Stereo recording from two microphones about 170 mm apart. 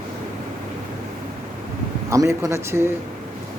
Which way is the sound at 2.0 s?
20° right (ahead or behind).